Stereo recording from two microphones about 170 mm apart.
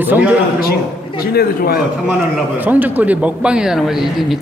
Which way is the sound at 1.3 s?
60° left (ahead or behind).